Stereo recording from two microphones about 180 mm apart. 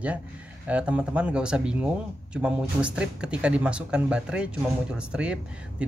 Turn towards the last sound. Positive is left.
turn(degrees=-5)  # may be behind; listen again after turning